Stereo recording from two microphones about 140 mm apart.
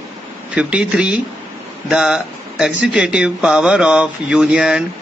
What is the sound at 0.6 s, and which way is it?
Speech, 10° right (ahead or behind).